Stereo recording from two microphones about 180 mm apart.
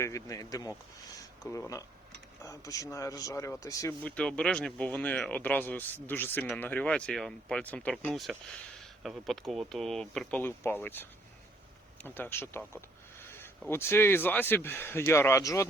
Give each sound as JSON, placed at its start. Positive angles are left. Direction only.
{"t": 0.0, "sound": "speech", "side_deg": 20}
{"t": 12.0, "sound": "speech", "side_deg": 10}